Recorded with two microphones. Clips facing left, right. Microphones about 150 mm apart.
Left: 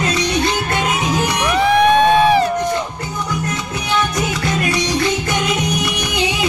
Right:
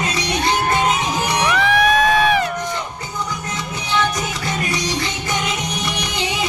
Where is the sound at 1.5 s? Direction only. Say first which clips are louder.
Left 5 dB; 35° left (ahead or behind).